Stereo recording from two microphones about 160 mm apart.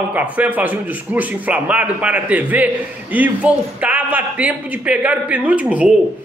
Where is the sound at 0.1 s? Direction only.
10° right (ahead or behind).